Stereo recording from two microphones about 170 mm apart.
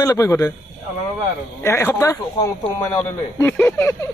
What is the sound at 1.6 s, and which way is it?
Speech, 15° left (ahead or behind).